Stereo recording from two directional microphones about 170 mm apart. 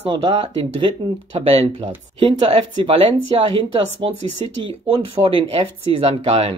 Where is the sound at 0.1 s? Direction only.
30° right (ahead or behind).